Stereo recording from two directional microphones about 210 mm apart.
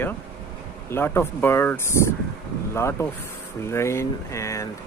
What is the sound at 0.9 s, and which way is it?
Speech, 10° left (ahead or behind).